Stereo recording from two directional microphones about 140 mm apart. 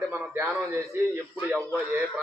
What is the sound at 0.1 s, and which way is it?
A man's voice, 20° right (ahead or behind).